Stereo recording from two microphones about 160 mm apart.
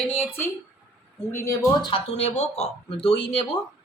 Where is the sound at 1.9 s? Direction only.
45° left (ahead or behind).